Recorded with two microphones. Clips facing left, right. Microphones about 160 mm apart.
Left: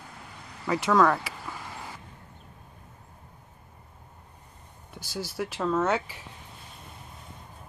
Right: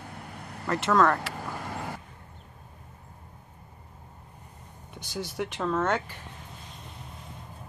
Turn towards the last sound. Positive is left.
turn(degrees=5)  # may be behind; listen again after turning